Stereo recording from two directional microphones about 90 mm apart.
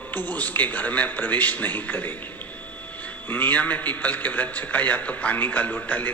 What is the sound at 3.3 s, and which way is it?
Speech, 20° left (ahead or behind).